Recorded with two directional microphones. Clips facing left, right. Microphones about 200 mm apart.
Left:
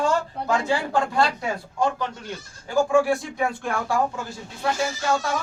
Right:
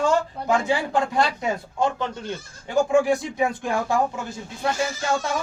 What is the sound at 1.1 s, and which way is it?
A man's voice, 20° right (ahead or behind).